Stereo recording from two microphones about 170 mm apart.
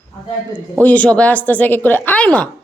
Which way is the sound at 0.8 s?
10° left (ahead or behind).